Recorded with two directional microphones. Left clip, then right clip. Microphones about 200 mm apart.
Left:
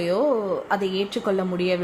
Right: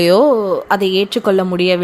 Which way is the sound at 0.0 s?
45° right (ahead or behind).